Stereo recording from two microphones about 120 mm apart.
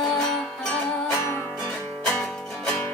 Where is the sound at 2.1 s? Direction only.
5° left (ahead or behind).